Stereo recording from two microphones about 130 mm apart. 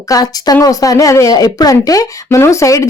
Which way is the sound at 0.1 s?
30° left (ahead or behind).